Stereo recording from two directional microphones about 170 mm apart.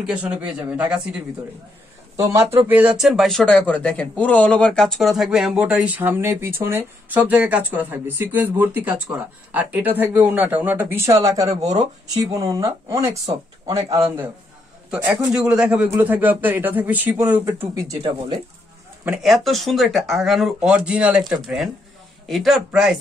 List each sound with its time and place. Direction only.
0.0 s speech: 5° right (ahead or behind)
2.1 s speech: 15° right (ahead or behind)
15.3 s speech: 5° right (ahead or behind)
19.0 s speech: centre (ahead or behind)